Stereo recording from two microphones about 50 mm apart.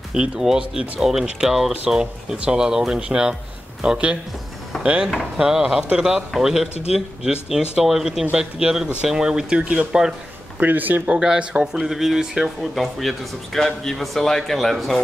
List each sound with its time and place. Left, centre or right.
0.1 s speech: centre
5.4 s speech: centre
9.6 s speech: right
10.6 s speech: right
11.0 s speech: centre
12.7 s speech: centre